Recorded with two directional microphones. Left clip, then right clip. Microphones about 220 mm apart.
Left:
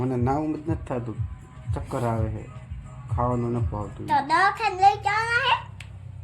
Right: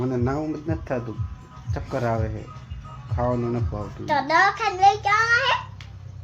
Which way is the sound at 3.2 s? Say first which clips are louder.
Right 1 dB; 5° left (ahead or behind).